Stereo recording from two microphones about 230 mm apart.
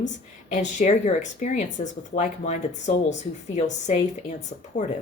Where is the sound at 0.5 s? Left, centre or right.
Left.